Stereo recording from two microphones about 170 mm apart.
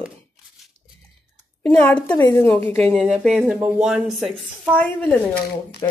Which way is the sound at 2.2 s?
15° left (ahead or behind).